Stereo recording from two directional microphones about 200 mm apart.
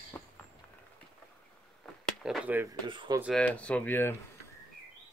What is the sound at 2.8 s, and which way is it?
Speech, 25° right (ahead or behind).